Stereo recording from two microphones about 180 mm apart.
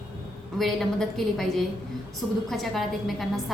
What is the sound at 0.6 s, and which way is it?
A woman's voice, centre (ahead or behind).